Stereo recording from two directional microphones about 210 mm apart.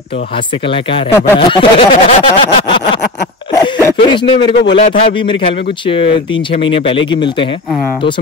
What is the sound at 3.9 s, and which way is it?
Speech, 25° left (ahead or behind).